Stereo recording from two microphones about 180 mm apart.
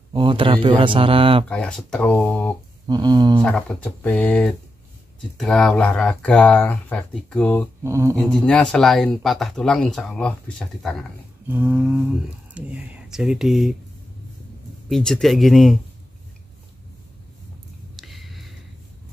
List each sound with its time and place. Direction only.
0.1 s speech: 25° right (ahead or behind)
1.5 s speech: 5° left (ahead or behind)
2.9 s speech: 20° right (ahead or behind)
3.4 s speech: 5° left (ahead or behind)
7.8 s a sound: 15° right (ahead or behind)
8.3 s speech: 5° left (ahead or behind)
11.4 s a sound: 10° right (ahead or behind)
12.5 s speech: 5° right (ahead or behind)
14.9 s speech: centre (ahead or behind)
17.9 s a sound: centre (ahead or behind)